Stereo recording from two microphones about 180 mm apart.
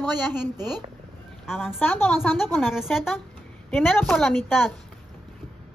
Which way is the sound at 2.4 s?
Centre (ahead or behind).